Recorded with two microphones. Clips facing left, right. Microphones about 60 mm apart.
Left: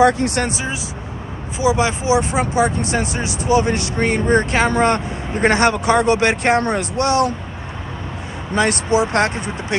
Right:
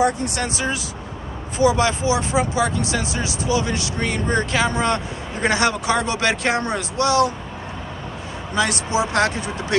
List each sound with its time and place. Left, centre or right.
0.0 s speech: left
1.6 s speech: centre; by 7.3 s left
8.5 s speech: left